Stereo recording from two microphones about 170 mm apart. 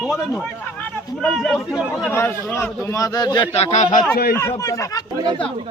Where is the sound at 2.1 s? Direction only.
15° left (ahead or behind).